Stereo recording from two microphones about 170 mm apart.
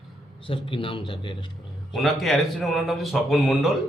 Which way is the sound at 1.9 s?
Centre (ahead or behind).